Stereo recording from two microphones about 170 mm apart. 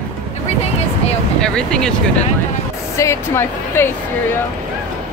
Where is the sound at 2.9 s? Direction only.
15° left (ahead or behind).